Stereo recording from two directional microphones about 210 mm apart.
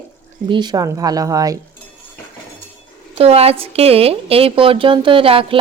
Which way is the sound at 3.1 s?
30° right (ahead or behind).